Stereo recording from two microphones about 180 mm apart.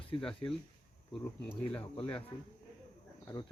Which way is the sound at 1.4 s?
10° left (ahead or behind).